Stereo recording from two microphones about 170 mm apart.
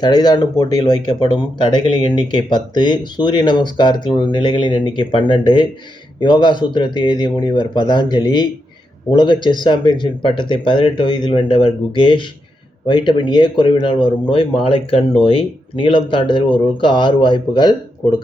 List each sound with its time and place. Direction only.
0.0 s speech: 25° left (ahead or behind)